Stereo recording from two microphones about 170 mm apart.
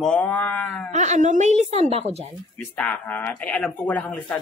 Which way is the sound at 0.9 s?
45° right (ahead or behind).